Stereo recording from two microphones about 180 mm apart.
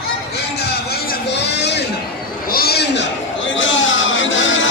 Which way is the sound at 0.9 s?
65° left (ahead or behind).